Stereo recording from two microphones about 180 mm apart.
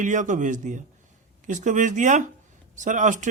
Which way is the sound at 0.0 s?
45° right (ahead or behind).